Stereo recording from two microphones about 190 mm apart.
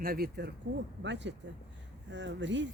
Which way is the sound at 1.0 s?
70° right (ahead or behind).